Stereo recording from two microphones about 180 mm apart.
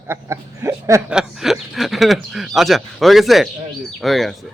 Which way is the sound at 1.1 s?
5° right (ahead or behind).